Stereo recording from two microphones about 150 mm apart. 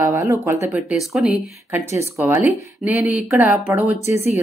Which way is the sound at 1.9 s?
20° right (ahead or behind).